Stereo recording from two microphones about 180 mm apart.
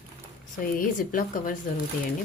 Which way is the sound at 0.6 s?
50° left (ahead or behind).